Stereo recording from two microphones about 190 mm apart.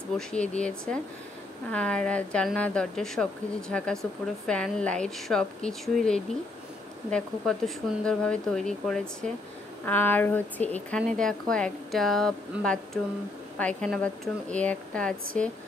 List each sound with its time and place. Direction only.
0.3 s a woman's voice: 5° left (ahead or behind)